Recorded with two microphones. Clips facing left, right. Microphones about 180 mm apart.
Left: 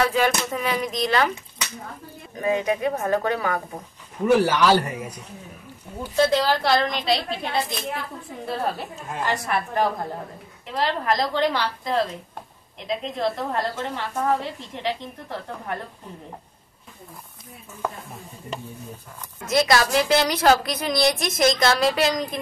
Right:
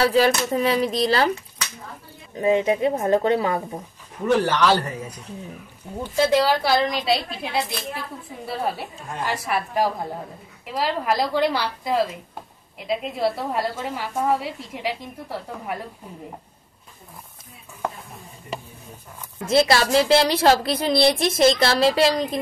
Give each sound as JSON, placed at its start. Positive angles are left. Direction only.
{"t": 0.0, "sound": "speech", "side_deg": -35}
{"t": 2.3, "sound": "a woman's voice", "side_deg": -25}
{"t": 4.3, "sound": "a man's voice", "side_deg": 10}
{"t": 6.1, "sound": "a woman's voice", "side_deg": -10}
{"t": 19.4, "sound": "a woman's voice", "side_deg": -30}